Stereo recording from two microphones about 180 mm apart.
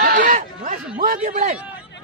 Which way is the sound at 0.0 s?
50° right (ahead or behind).